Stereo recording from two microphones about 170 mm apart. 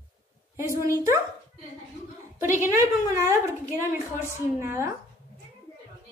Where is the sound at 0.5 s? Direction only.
15° right (ahead or behind).